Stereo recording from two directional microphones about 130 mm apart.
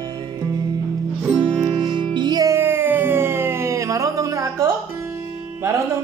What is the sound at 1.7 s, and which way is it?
Music, 35° right (ahead or behind).